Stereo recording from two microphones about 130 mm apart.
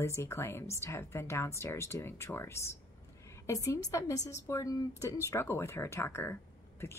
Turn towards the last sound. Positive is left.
turn(degrees=20)  # may be behind; listen again after turning